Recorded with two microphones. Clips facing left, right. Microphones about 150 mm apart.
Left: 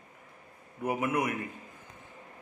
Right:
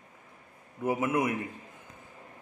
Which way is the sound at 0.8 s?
25° right (ahead or behind).